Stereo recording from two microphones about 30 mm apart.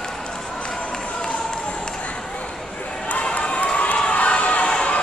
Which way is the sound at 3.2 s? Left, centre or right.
Left.